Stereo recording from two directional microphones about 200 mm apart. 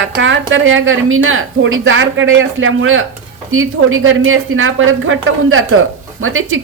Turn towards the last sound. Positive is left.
turn(degrees=-90)